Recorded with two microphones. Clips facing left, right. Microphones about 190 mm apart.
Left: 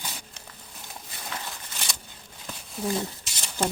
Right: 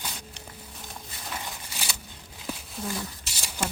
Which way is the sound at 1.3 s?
5° right (ahead or behind).